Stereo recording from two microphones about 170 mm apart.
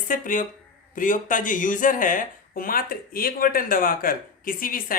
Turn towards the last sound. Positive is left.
turn(degrees=55)  # may be behind; listen again after turning